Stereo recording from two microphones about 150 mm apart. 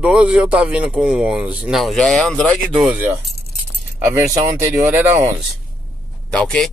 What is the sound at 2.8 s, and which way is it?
Speech, 10° right (ahead or behind).